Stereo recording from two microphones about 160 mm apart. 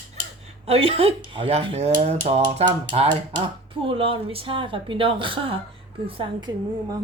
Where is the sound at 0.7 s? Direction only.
35° right (ahead or behind).